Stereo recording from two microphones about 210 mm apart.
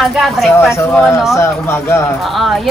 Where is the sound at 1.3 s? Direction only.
10° left (ahead or behind).